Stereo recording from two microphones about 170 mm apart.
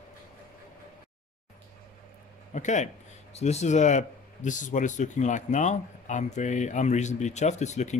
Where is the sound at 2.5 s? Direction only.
45° left (ahead or behind).